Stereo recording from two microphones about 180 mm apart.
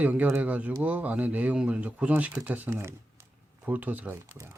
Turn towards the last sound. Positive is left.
turn(degrees=-15)  # may be behind; listen again after turning